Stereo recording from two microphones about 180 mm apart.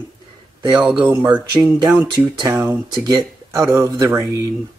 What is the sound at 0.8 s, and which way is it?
Speech, 5° right (ahead or behind).